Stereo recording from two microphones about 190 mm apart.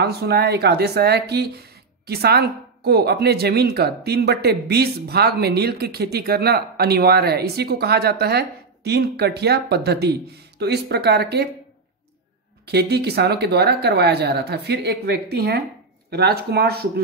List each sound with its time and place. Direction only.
0.0 s speech: 60° right (ahead or behind)
12.6 s speech: 60° right (ahead or behind)